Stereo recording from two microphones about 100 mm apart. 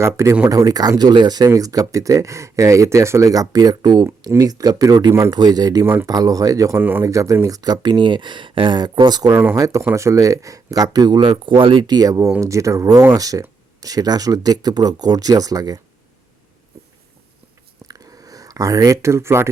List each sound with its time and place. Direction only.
0.0 s speech: 30° right (ahead or behind)
5.8 s speech: 25° right (ahead or behind)
6.1 s speech: 35° right (ahead or behind)
9.6 s speech: 30° right (ahead or behind)
17.8 s a sound: 35° right (ahead or behind)